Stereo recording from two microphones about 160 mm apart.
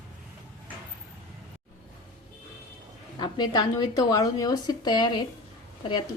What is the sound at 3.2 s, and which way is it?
Speech, 25° left (ahead or behind).